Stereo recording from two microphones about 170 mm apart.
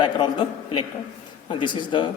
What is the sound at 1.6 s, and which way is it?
Speech, 30° left (ahead or behind).